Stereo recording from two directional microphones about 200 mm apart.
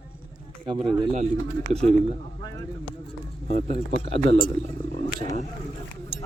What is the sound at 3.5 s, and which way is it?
Speech, 35° right (ahead or behind).